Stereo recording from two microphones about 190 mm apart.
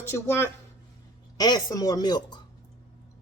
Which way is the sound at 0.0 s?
10° left (ahead or behind).